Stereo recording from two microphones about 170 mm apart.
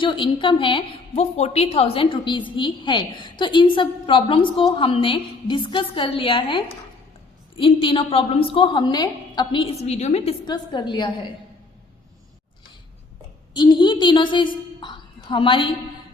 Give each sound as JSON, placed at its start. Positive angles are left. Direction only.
{"t": 0.0, "sound": "a woman's voice", "side_deg": 30}
{"t": 10.4, "sound": "a woman's voice", "side_deg": 25}
{"t": 13.5, "sound": "a woman's voice", "side_deg": 25}